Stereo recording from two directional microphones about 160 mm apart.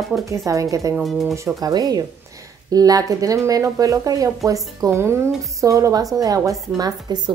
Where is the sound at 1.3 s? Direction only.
20° right (ahead or behind).